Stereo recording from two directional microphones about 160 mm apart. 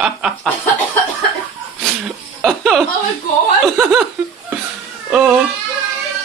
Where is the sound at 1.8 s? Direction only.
5° left (ahead or behind).